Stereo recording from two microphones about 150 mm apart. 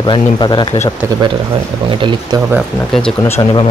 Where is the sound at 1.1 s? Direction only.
25° right (ahead or behind).